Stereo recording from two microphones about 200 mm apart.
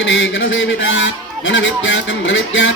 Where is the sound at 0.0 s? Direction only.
70° left (ahead or behind).